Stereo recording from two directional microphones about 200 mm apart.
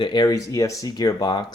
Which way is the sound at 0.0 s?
20° left (ahead or behind).